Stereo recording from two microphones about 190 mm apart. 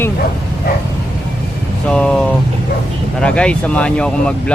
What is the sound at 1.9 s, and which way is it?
Speech, 5° left (ahead or behind).